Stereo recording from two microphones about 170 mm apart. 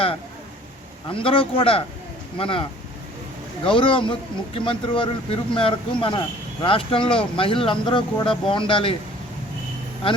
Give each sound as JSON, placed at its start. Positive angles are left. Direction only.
{"t": 1.1, "sound": "speech", "side_deg": 30}